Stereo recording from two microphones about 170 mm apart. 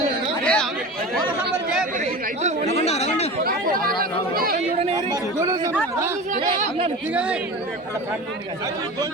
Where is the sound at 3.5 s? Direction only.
60° right (ahead or behind).